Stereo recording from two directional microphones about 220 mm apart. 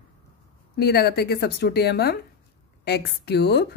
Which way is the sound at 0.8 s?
45° left (ahead or behind).